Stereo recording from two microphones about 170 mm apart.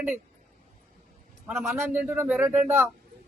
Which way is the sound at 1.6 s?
10° right (ahead or behind).